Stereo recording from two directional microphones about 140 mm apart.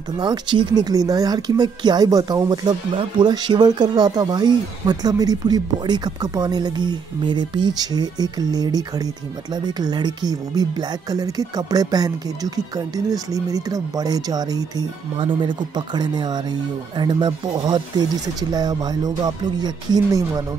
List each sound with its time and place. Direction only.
0.2 s speech: 35° right (ahead or behind)